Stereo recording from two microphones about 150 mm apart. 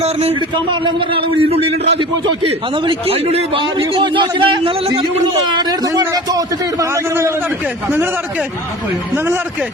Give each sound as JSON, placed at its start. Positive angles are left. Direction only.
{"t": 0.0, "sound": "a man's voice", "side_deg": -45}
{"t": 0.5, "sound": "a man's voice", "side_deg": -30}
{"t": 2.2, "sound": "a man's voice", "side_deg": -35}
{"t": 5.5, "sound": "a man's voice", "side_deg": -25}
{"t": 9.1, "sound": "speech", "side_deg": -15}